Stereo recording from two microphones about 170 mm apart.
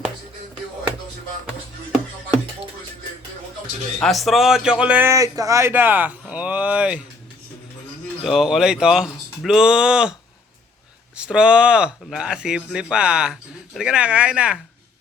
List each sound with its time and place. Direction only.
4.0 s speech: centre (ahead or behind)
8.2 s speech: centre (ahead or behind)
11.2 s speech: 5° right (ahead or behind)